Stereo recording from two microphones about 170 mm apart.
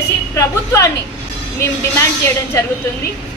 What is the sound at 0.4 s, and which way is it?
A woman's voice, 15° left (ahead or behind).